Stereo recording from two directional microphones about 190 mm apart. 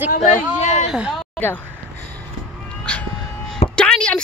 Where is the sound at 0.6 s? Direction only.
35° left (ahead or behind).